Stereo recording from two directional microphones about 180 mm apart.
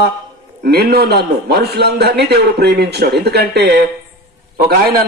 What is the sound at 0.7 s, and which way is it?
A man's voice, 60° right (ahead or behind).